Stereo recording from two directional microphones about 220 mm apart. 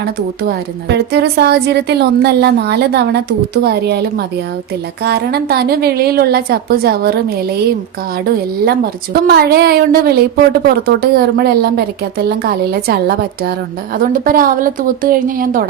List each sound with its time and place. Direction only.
0.0 s a woman's voice: 50° right (ahead or behind)
8.6 s a woman's voice: 45° right (ahead or behind)